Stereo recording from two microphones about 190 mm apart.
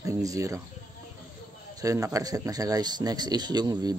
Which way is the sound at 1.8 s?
20° right (ahead or behind).